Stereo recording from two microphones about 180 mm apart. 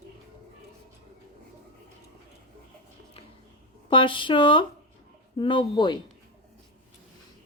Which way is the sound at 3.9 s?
30° left (ahead or behind).